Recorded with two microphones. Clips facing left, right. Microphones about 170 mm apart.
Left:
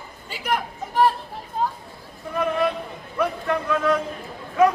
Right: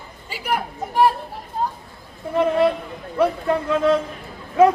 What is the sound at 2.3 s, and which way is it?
Speech, 25° right (ahead or behind).